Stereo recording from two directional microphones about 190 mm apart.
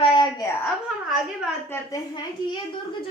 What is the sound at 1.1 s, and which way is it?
Speech, 5° right (ahead or behind).